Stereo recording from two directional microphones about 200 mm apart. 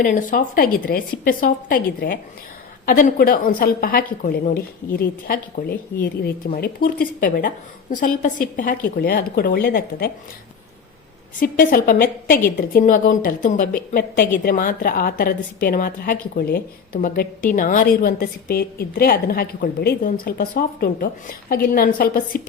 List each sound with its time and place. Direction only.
0.0 s a woman's voice: 45° left (ahead or behind)
11.5 s a woman's voice: 45° left (ahead or behind)